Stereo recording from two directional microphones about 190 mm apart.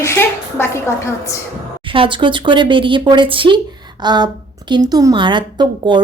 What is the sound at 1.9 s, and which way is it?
A woman's voice, 25° right (ahead or behind).